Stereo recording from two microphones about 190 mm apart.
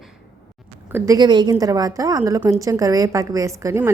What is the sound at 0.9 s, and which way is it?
A woman's voice, 15° right (ahead or behind).